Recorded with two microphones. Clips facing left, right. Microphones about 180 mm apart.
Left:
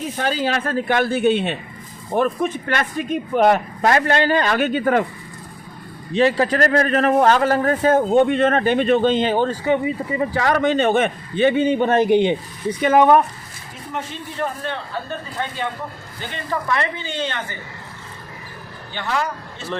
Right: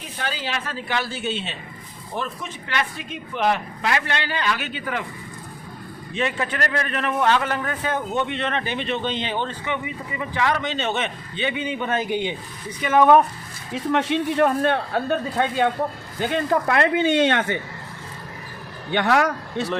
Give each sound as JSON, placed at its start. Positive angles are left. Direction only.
{"t": 0.2, "sound": "speech", "side_deg": 45}
{"t": 6.1, "sound": "a man's voice", "side_deg": 35}
{"t": 12.0, "sound": "speech", "side_deg": -5}
{"t": 13.7, "sound": "speech", "side_deg": -85}
{"t": 18.9, "sound": "a man's voice", "side_deg": -65}